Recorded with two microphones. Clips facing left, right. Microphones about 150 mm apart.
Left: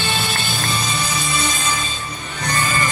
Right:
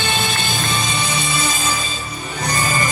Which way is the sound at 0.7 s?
Centre (ahead or behind).